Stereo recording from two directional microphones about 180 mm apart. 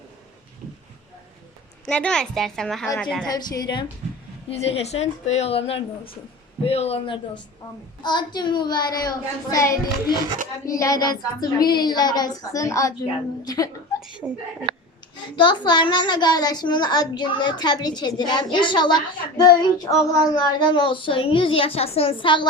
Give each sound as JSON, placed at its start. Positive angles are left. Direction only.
{"t": 1.9, "sound": "a child's voice", "side_deg": 5}
{"t": 3.2, "sound": "a child's voice", "side_deg": 20}
{"t": 4.4, "sound": "a woman's voice", "side_deg": 35}
{"t": 8.0, "sound": "a child's voice", "side_deg": 25}
{"t": 14.2, "sound": "speech", "side_deg": -10}
{"t": 15.4, "sound": "a child's voice", "side_deg": 25}